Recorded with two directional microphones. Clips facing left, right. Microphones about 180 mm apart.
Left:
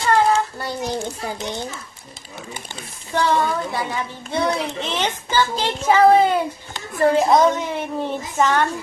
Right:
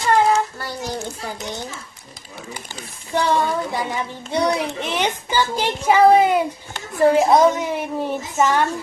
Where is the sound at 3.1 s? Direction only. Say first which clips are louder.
Even; 15° right (ahead or behind).